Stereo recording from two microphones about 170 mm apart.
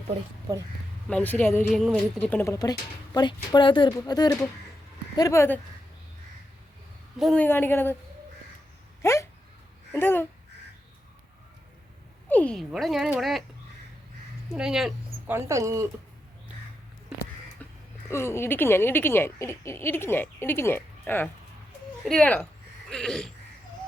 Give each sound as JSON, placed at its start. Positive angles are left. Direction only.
{"t": 1.1, "sound": "speech", "side_deg": 10}
{"t": 7.2, "sound": "speech", "side_deg": 0}
{"t": 7.4, "sound": "speech", "side_deg": 10}
{"t": 9.0, "sound": "speech", "side_deg": 20}
{"t": 12.3, "sound": "speech", "side_deg": 5}
{"t": 14.5, "sound": "speech", "side_deg": -5}
{"t": 15.3, "sound": "speech", "side_deg": -15}
{"t": 17.6, "sound": "music", "side_deg": 10}
{"t": 18.1, "sound": "speech", "side_deg": 15}